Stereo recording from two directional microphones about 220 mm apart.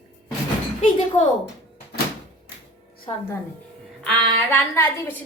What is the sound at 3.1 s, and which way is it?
Speech, 25° left (ahead or behind).